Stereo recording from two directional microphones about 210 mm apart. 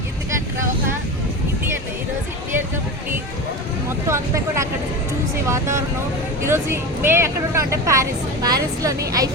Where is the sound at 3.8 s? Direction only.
15° right (ahead or behind).